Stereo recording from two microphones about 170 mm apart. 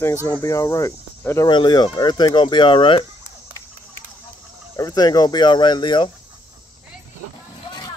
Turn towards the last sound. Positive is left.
turn(degrees=25)  # may be behind; listen again after turning